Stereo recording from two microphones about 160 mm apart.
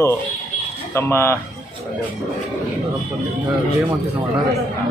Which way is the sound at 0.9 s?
15° left (ahead or behind).